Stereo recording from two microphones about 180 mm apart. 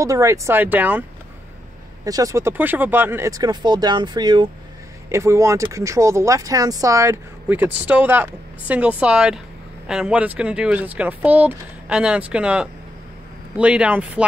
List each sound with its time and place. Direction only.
0.0 s speech: 15° right (ahead or behind)
2.0 s speech: 20° right (ahead or behind)